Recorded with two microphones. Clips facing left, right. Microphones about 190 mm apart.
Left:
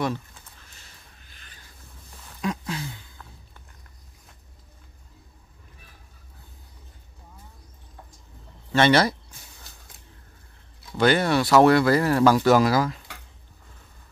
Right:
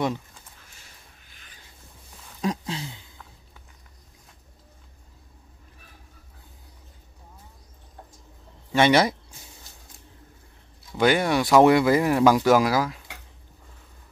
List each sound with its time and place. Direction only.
2.4 s a sound: 30° right (ahead or behind)
8.7 s speech: 15° right (ahead or behind)
11.0 s speech: 15° right (ahead or behind)